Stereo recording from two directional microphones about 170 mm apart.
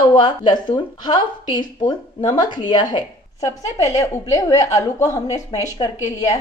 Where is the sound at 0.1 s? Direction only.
25° left (ahead or behind).